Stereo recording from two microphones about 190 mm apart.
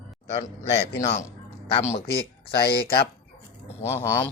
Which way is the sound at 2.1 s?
55° left (ahead or behind).